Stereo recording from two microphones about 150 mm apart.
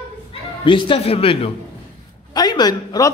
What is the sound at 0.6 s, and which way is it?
Speech, 35° left (ahead or behind).